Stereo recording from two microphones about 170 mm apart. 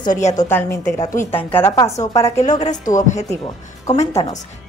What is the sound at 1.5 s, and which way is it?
Speech, 15° left (ahead or behind).